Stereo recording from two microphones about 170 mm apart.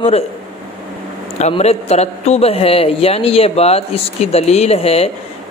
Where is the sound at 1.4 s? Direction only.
40° left (ahead or behind).